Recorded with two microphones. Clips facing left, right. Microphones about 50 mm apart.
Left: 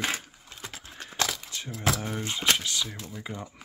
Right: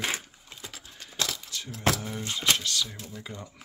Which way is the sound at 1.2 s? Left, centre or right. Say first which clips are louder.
Left 2 dB; left.